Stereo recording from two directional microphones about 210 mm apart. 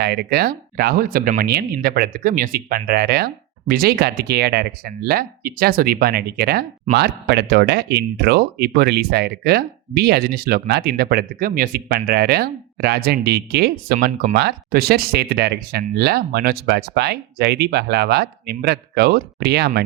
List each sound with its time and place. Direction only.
0.0 s speech: 50° right (ahead or behind)